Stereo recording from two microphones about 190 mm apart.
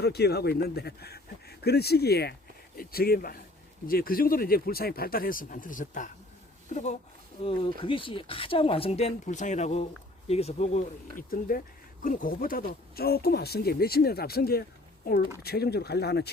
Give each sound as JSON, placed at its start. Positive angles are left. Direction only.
{"t": 0.0, "sound": "speech", "side_deg": 60}
{"t": 7.4, "sound": "speech", "side_deg": 30}